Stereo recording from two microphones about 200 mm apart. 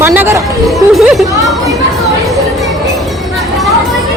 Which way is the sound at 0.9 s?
Centre (ahead or behind).